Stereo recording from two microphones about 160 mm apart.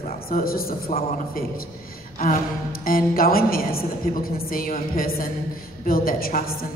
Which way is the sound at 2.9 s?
65° left (ahead or behind).